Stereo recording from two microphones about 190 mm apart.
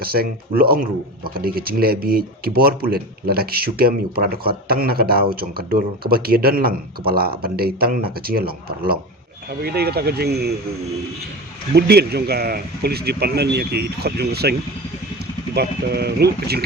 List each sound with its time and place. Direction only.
0.0 s speech: 50° right (ahead or behind)
11.7 s speech: 60° right (ahead or behind)
15.5 s speech: 55° right (ahead or behind)